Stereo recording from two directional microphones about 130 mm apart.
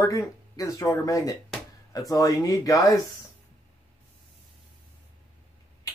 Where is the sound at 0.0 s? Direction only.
25° left (ahead or behind).